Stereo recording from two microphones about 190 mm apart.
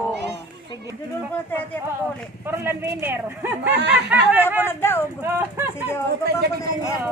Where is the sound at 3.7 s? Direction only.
65° right (ahead or behind).